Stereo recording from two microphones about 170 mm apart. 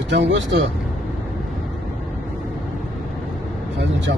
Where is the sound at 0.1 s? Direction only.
90° right.